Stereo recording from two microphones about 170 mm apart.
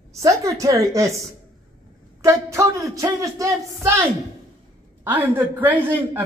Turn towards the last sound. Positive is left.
turn(degrees=-10)  # may be behind; listen again after turning